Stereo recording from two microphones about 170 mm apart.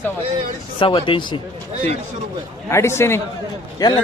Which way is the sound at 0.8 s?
30° left (ahead or behind).